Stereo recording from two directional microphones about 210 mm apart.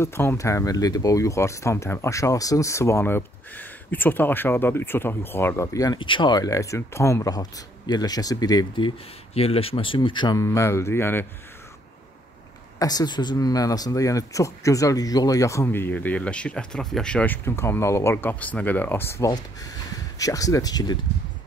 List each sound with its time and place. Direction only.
0.0 s speech: 10° left (ahead or behind)
12.7 s speech: 20° left (ahead or behind)